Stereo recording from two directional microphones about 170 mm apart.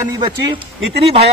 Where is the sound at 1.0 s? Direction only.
35° right (ahead or behind).